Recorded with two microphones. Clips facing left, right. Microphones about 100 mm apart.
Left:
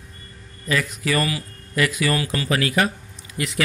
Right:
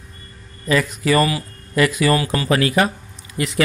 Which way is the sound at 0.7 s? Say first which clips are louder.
Right 5 dB; 30° right (ahead or behind).